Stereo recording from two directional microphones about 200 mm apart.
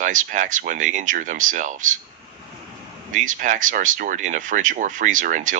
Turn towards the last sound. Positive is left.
turn(degrees=-40)  # may be behind; listen again after turning